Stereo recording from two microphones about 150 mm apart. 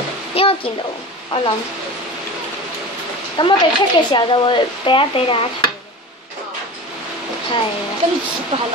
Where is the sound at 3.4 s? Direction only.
35° left (ahead or behind).